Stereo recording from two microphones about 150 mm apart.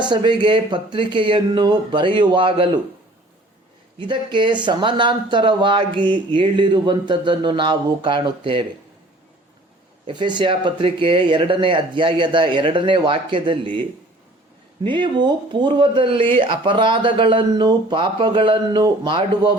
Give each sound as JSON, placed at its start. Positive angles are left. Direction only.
{"t": 0.0, "sound": "speech", "side_deg": -30}
{"t": 3.9, "sound": "speech", "side_deg": -30}
{"t": 10.1, "sound": "speech", "side_deg": -30}
{"t": 14.8, "sound": "speech", "side_deg": -30}